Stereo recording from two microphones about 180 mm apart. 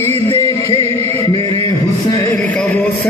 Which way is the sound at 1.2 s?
20° left (ahead or behind).